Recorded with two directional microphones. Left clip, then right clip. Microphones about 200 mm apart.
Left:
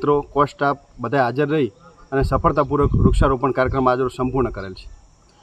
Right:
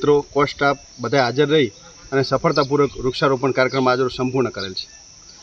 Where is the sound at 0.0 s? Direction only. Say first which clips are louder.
Right 1 dB; 15° left (ahead or behind).